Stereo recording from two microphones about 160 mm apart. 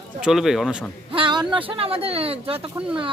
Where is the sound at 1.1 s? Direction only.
30° right (ahead or behind).